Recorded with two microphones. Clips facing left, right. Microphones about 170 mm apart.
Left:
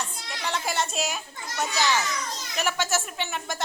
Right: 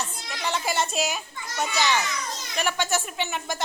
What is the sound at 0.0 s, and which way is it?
Children playing, centre (ahead or behind).